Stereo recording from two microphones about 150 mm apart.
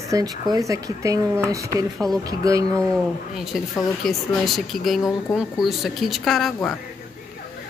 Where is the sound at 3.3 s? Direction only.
Centre (ahead or behind).